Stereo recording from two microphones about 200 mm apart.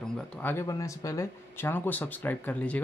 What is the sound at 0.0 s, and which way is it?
Speech, 5° left (ahead or behind).